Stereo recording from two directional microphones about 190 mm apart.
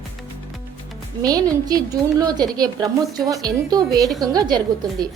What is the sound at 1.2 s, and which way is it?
A woman's voice, 20° right (ahead or behind).